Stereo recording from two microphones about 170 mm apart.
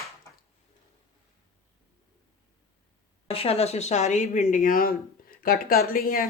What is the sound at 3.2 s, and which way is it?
Speech, 35° left (ahead or behind).